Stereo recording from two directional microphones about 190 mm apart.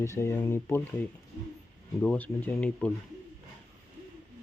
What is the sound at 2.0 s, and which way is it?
Speech, 10° left (ahead or behind).